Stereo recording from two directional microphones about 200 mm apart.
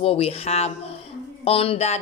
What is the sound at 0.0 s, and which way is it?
A woman's voice, 30° left (ahead or behind).